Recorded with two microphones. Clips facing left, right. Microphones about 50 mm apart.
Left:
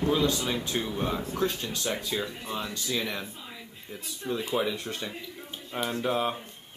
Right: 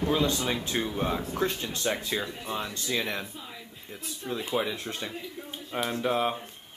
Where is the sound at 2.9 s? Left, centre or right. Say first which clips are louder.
Right 1 dB; centre.